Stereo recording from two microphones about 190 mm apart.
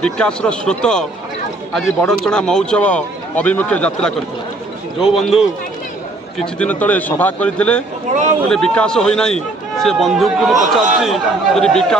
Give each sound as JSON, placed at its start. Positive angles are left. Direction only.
{"t": 0.0, "sound": "speech", "side_deg": 5}
{"t": 2.0, "sound": "a man's voice", "side_deg": 5}
{"t": 8.1, "sound": "speech", "side_deg": -40}
{"t": 8.5, "sound": "speech", "side_deg": 5}